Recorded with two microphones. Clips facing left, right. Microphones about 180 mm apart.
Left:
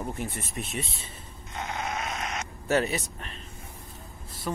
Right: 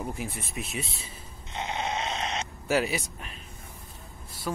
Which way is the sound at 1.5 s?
20° right (ahead or behind).